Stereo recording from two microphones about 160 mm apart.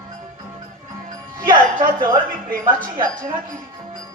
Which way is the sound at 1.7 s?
60° right (ahead or behind).